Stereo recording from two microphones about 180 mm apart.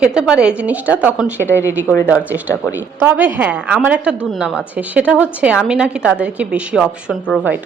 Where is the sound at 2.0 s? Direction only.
10° right (ahead or behind).